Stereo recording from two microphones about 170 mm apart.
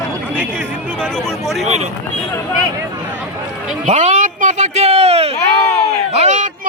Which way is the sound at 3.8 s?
45° right (ahead or behind).